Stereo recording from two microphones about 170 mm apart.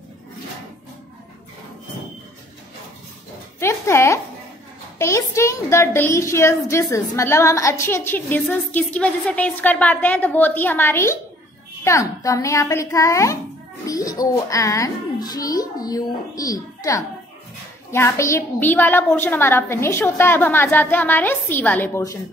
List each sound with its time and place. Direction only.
3.5 s a woman's voice: 15° left (ahead or behind)